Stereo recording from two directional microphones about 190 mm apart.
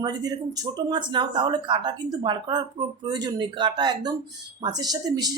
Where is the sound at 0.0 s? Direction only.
20° right (ahead or behind).